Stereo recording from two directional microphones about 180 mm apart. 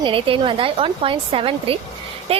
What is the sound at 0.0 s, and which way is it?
A woman's voice, 30° right (ahead or behind).